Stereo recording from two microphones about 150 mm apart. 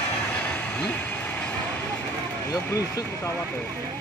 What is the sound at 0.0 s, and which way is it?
Vehicle, 10° left (ahead or behind).